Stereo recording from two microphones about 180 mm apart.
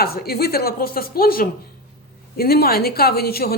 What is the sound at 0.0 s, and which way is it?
A woman's voice, 60° left (ahead or behind).